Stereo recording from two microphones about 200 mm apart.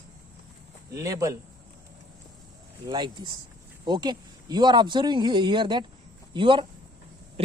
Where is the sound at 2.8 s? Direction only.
20° right (ahead or behind).